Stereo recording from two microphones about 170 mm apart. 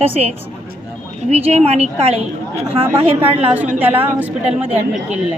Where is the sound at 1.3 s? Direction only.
40° right (ahead or behind).